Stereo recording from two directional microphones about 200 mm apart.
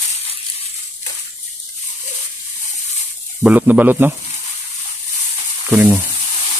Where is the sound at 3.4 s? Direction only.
10° right (ahead or behind).